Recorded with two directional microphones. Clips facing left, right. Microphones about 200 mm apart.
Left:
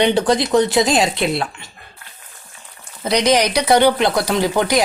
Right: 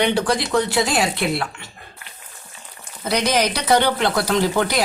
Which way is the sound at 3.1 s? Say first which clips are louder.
Left 4 dB; 15° left (ahead or behind).